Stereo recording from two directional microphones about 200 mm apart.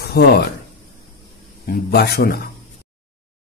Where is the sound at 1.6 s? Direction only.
50° left (ahead or behind).